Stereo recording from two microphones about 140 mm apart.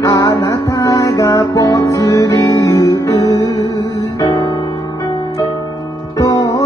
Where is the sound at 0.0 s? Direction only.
25° left (ahead or behind).